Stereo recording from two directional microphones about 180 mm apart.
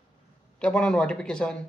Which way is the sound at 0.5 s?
5° left (ahead or behind).